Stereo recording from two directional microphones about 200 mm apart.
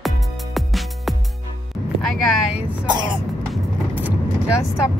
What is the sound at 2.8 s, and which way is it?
Throat clearing, 20° right (ahead or behind).